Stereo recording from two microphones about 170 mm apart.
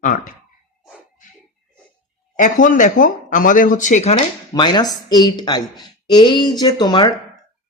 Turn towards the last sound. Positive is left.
turn(degrees=25)  # may be behind; listen again after turning